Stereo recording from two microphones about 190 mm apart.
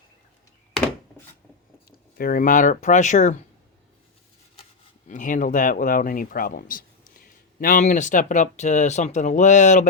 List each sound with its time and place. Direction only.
2.1 s speech: 50° left (ahead or behind)
5.0 s speech: 45° left (ahead or behind)